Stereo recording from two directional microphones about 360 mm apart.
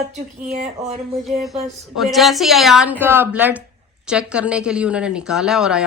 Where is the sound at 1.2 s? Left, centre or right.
Centre.